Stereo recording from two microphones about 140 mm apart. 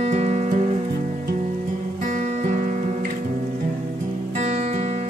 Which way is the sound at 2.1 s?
55° right (ahead or behind).